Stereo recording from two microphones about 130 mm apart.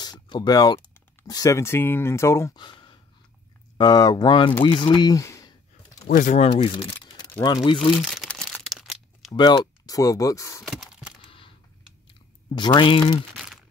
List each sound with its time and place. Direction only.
0.0 s a sound: 35° left (ahead or behind)
1.2 s speech: 30° left (ahead or behind)
2.5 s a sound: 35° left (ahead or behind)
3.7 s speech: 35° left (ahead or behind)
6.0 s speech: 80° left
6.4 s speech: 50° left (ahead or behind)
7.4 s speech: 35° left (ahead or behind)
8.0 s crumpling: centre (ahead or behind)
9.3 s speech: 30° left (ahead or behind)
10.6 s a sound: centre (ahead or behind)
11.2 s a sound: 40° left (ahead or behind)
12.5 s speech: 35° left (ahead or behind)